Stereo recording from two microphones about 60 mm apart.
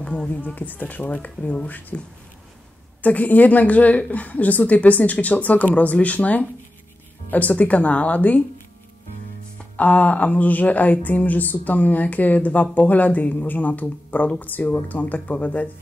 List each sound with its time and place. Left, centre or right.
0.6 s a woman's voice: left
9.8 s a woman's voice: left